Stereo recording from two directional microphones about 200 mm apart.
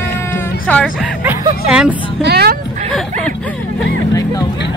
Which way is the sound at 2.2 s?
55° right (ahead or behind).